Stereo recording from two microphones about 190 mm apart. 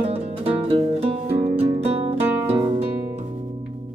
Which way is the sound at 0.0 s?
30° right (ahead or behind).